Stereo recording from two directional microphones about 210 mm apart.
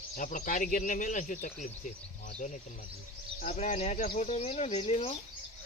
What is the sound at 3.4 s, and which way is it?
Speech, 35° left (ahead or behind).